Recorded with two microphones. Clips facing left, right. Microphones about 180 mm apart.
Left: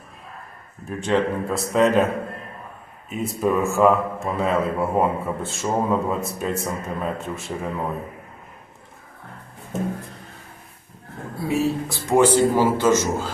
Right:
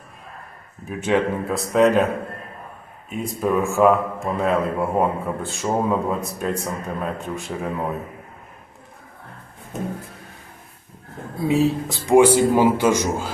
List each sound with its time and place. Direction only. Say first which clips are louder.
0.9 s speech: right 1 dB; 5° right (ahead or behind)
3.1 s speech: even; centre (ahead or behind)
11.4 s speech: right 3 dB; 20° right (ahead or behind)